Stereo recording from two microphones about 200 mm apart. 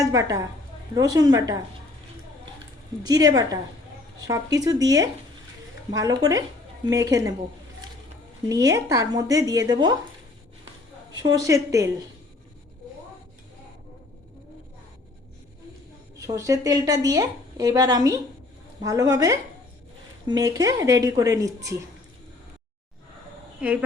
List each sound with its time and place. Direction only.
0.0 s a woman's voice: 15° right (ahead or behind)
3.0 s a woman's voice: 20° right (ahead or behind)
8.4 s a woman's voice: 15° right (ahead or behind)
11.2 s a woman's voice: 15° right (ahead or behind)
16.1 s a woman's voice: 15° right (ahead or behind)
23.6 s speech: 5° right (ahead or behind)